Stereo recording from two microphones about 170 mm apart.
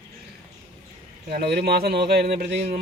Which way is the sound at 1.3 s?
70° right (ahead or behind).